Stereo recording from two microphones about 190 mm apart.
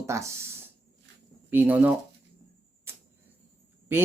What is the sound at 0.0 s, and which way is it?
Speech, 15° right (ahead or behind).